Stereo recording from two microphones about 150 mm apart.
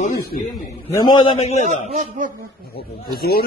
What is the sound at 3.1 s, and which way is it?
Speech, 90° left.